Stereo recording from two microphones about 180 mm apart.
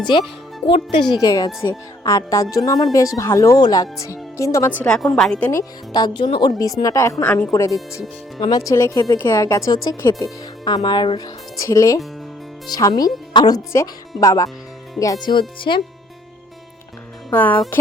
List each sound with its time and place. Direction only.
0.1 s a woman's voice: 25° left (ahead or behind); by 5.5 s 5° left (ahead or behind)
5.5 s a woman's voice: 20° left (ahead or behind)
17.2 s speech: 10° left (ahead or behind)